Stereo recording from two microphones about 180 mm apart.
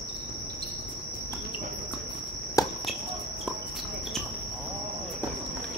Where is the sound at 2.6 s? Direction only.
20° left (ahead or behind).